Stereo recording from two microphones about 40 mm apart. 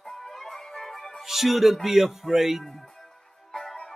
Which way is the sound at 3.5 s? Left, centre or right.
Centre.